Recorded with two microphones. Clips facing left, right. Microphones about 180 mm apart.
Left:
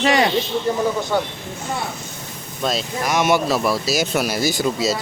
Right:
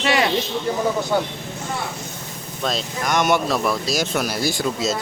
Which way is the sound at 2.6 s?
Centre (ahead or behind).